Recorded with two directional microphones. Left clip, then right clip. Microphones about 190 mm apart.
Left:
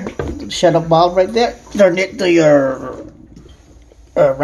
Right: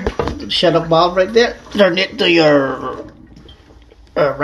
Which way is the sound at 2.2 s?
5° right (ahead or behind).